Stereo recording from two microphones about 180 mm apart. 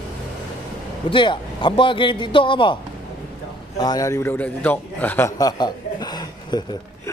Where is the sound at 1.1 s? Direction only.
25° left (ahead or behind).